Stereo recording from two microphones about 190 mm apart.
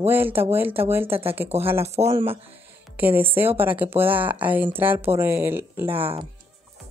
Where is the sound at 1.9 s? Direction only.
35° right (ahead or behind).